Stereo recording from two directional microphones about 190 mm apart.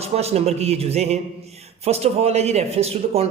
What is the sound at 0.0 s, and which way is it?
Speech, 35° right (ahead or behind).